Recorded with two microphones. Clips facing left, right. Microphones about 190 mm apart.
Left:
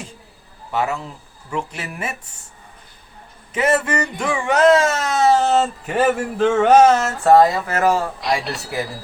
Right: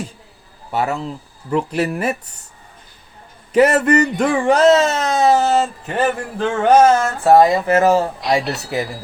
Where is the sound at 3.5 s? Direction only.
35° right (ahead or behind).